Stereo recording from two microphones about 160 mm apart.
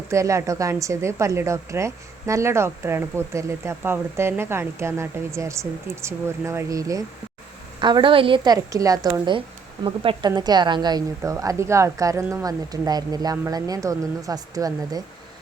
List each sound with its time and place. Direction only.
0.1 s a woman's voice: 20° right (ahead or behind)
8.7 s a woman's voice: 20° right (ahead or behind)